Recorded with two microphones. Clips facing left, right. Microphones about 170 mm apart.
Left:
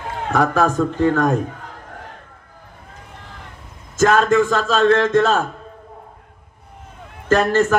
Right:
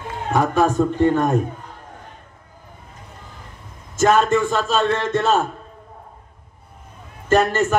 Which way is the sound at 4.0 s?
90° left.